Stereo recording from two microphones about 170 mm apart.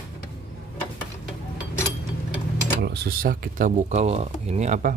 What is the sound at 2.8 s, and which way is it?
Speech, 70° right (ahead or behind).